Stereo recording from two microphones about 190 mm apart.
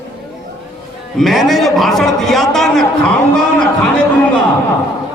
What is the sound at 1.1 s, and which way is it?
A man's voice, centre (ahead or behind).